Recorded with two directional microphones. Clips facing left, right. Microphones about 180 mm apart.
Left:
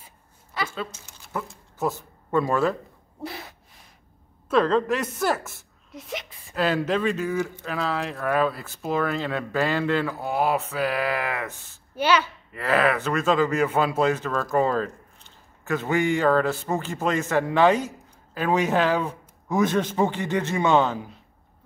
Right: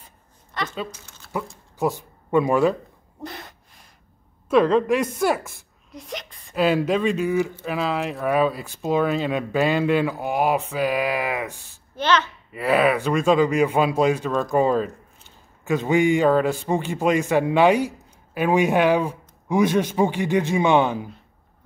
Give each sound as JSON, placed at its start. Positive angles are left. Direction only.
{"t": 0.6, "sound": "speech", "side_deg": 5}
{"t": 1.8, "sound": "speech", "side_deg": -15}
{"t": 3.2, "sound": "a sound", "side_deg": 5}
{"t": 4.5, "sound": "a man's voice", "side_deg": -10}
{"t": 5.9, "sound": "speech", "side_deg": 0}
{"t": 6.5, "sound": "a man's voice", "side_deg": -10}
{"t": 11.9, "sound": "a child's voice", "side_deg": 10}
{"t": 12.5, "sound": "a man's voice", "side_deg": -15}